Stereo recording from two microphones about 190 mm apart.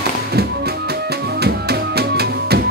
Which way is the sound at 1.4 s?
55° right (ahead or behind).